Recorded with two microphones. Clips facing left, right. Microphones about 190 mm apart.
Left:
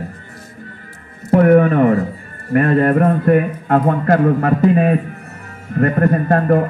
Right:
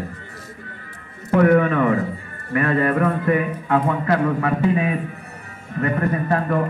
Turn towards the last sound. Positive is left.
turn(degrees=50)  # may be behind; listen again after turning